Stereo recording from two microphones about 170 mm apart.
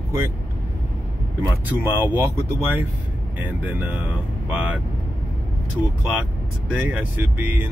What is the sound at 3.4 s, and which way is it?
Speech, 10° right (ahead or behind).